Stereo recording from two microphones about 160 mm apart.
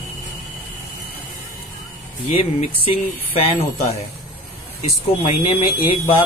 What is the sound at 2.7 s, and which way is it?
Speech, 35° left (ahead or behind).